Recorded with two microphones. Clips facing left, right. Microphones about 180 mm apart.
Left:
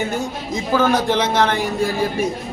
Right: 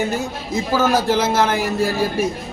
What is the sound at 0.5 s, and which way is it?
A man's voice, 5° right (ahead or behind).